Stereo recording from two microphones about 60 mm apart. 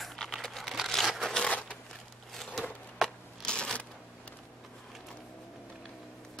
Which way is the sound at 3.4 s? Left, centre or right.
Centre.